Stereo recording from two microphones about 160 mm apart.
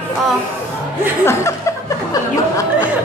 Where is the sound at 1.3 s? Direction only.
20° left (ahead or behind).